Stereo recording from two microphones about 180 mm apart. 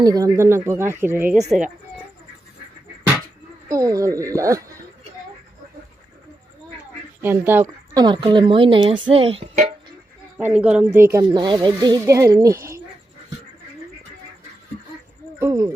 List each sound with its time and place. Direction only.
0.0 s speech: 20° right (ahead or behind)
3.7 s speech: 20° right (ahead or behind)
7.2 s speech: 10° right (ahead or behind)
8.0 s speech: 25° right (ahead or behind)
10.3 s speech: 5° right (ahead or behind)
15.4 s speech: 15° right (ahead or behind)